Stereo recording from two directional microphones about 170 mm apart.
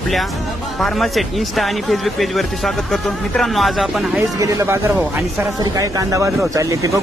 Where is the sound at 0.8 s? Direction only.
Centre (ahead or behind).